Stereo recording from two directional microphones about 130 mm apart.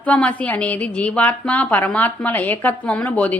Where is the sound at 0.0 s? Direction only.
10° left (ahead or behind).